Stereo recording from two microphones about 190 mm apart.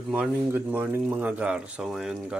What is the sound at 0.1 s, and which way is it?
Speech, 10° right (ahead or behind).